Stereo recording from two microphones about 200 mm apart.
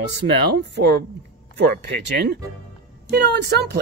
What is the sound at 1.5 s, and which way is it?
A woman's voice, 55° right (ahead or behind).